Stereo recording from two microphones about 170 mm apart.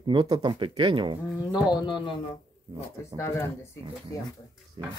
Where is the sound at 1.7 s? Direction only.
25° left (ahead or behind).